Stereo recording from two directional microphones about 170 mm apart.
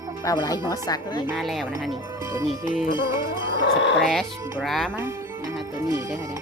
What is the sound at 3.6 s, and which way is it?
Speech, 90° left.